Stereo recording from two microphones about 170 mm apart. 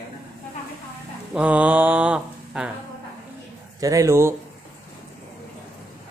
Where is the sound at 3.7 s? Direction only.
20° right (ahead or behind).